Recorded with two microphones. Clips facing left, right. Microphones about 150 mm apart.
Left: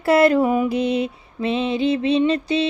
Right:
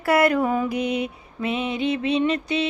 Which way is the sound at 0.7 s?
30° left (ahead or behind).